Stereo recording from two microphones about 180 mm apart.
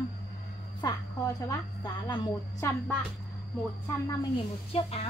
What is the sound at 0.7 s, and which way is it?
A woman's voice, 20° left (ahead or behind).